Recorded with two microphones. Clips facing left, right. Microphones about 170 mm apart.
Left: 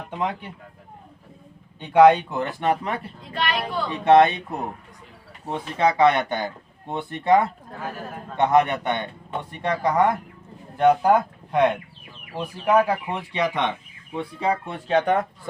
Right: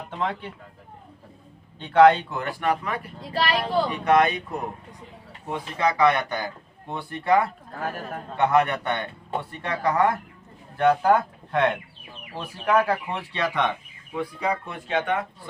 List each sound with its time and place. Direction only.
0.2 s speech: 10° left (ahead or behind)
1.8 s a man's voice: 15° left (ahead or behind)
3.3 s speech: 30° right (ahead or behind)
3.8 s a man's voice: 30° left (ahead or behind)
5.5 s a man's voice: 25° left (ahead or behind)
14.2 s a man's voice: 25° left (ahead or behind)